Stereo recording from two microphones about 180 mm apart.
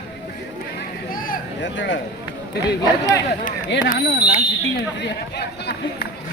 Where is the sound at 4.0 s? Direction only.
65° left (ahead or behind).